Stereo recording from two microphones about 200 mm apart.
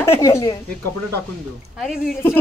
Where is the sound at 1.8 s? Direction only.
Centre (ahead or behind).